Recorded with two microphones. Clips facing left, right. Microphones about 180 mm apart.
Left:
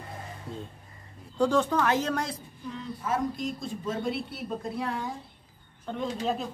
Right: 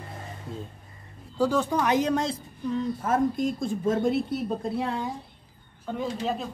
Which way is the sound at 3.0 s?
50° right (ahead or behind).